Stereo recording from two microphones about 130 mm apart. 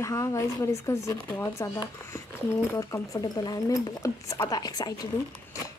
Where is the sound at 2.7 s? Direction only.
25° left (ahead or behind).